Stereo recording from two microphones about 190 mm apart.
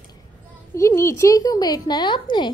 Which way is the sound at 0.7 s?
15° left (ahead or behind).